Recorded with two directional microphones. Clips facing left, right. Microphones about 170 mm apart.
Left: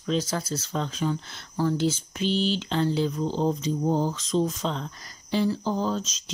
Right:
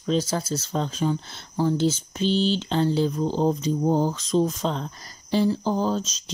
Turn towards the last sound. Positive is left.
turn(degrees=-35)  # may be behind; listen again after turning